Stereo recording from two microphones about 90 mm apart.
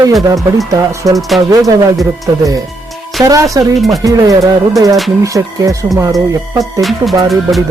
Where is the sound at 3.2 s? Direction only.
40° right (ahead or behind).